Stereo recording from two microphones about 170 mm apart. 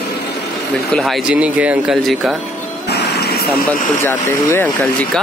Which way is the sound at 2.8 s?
70° left (ahead or behind).